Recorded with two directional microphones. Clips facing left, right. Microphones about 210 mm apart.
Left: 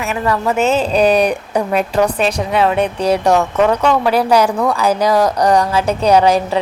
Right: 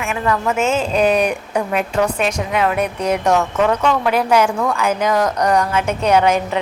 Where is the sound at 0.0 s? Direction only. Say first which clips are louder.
Left 2 dB; 35° left (ahead or behind).